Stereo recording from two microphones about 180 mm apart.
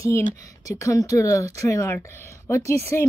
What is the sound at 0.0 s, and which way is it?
Speech, 20° left (ahead or behind).